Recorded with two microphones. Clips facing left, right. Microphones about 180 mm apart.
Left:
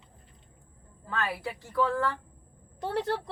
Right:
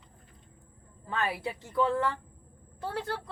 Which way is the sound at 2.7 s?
20° left (ahead or behind).